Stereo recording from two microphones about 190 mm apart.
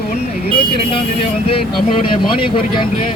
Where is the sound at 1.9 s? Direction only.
25° left (ahead or behind).